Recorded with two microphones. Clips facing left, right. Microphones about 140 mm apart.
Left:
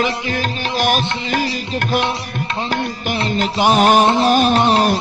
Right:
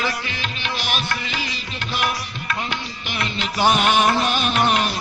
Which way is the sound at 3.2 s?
40° left (ahead or behind).